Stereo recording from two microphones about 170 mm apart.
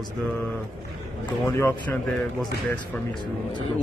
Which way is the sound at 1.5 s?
15° left (ahead or behind).